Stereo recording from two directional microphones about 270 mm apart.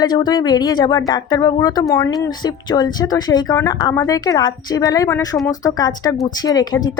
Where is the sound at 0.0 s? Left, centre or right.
Centre.